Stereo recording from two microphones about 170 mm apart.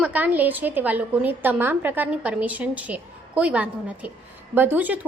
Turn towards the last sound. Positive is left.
turn(degrees=-10)  # may be behind; listen again after turning